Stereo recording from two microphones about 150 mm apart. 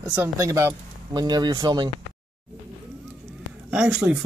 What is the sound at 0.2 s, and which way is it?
Speech, 20° right (ahead or behind).